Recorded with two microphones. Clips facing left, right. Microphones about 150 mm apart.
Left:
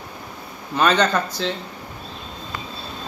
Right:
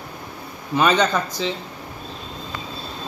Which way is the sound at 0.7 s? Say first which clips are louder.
Even; 10° right (ahead or behind).